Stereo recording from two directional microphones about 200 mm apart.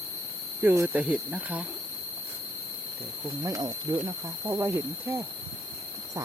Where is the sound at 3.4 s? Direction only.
15° right (ahead or behind).